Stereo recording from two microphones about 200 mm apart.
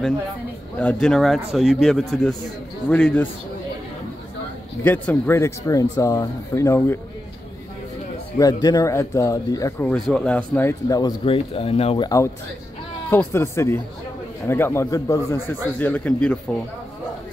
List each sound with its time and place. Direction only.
0.7 s a man's voice: 5° left (ahead or behind)
4.8 s speech: 10° left (ahead or behind)
8.4 s speech: 20° left (ahead or behind)
13.1 s speech: 10° left (ahead or behind)